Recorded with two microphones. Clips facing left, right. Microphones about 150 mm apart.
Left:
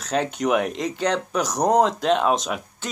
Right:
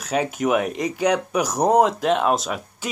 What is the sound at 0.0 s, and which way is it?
Speech, 5° right (ahead or behind).